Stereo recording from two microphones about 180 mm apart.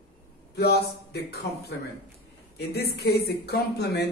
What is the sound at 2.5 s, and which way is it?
Speech, 65° left (ahead or behind).